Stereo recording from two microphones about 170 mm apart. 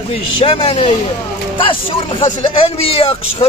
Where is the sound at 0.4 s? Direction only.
35° left (ahead or behind).